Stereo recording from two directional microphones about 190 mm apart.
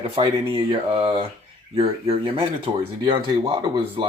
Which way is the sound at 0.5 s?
30° right (ahead or behind).